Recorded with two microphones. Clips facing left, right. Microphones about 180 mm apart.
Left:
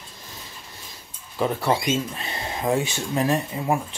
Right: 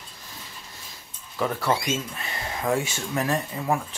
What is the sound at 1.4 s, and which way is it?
Speech, 20° left (ahead or behind).